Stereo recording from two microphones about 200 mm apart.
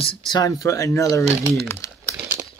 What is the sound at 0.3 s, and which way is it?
Speech, 20° left (ahead or behind).